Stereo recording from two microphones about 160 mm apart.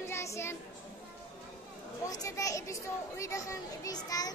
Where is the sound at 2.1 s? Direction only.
20° left (ahead or behind).